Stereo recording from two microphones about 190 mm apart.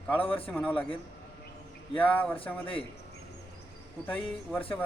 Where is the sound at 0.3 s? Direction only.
30° left (ahead or behind).